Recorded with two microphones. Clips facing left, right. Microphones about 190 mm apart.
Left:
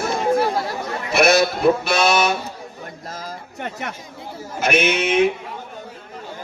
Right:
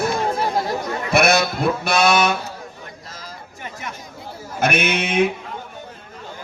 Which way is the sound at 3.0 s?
50° left (ahead or behind).